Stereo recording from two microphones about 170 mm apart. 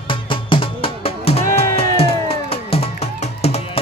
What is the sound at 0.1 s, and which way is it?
Music, 30° left (ahead or behind).